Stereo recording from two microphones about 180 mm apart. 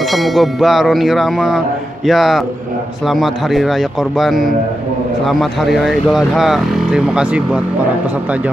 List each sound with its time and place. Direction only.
0.1 s speech: centre (ahead or behind)